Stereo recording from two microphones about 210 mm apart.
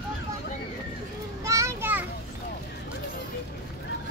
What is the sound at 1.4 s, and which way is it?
Children playing, 15° right (ahead or behind).